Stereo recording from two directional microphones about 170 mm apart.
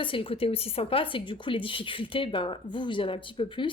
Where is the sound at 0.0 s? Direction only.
30° left (ahead or behind).